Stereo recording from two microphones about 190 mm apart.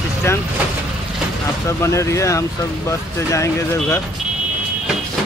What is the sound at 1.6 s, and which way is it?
Speech, 15° left (ahead or behind).